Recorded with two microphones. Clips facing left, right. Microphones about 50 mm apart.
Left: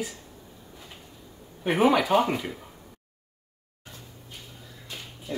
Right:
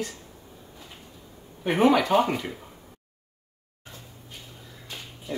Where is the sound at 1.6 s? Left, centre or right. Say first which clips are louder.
Right 1 dB; centre.